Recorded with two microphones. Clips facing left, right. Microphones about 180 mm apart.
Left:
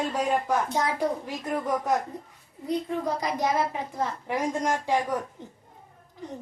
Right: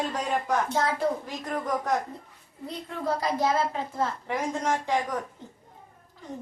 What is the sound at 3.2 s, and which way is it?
A woman's voice, 15° left (ahead or behind).